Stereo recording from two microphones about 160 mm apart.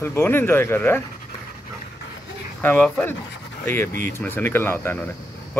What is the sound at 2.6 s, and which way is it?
Speech, 10° left (ahead or behind).